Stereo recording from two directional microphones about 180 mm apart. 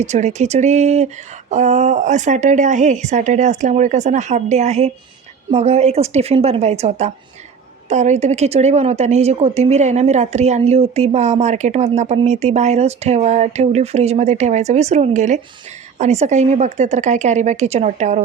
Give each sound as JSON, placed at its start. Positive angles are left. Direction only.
{"t": 0.0, "sound": "a woman's voice", "side_deg": -40}